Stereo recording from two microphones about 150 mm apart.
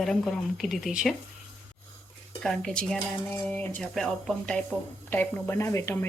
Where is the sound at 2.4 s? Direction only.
5° left (ahead or behind).